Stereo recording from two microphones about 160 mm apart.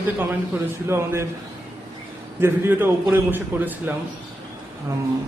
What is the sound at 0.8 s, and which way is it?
Speech, 15° right (ahead or behind).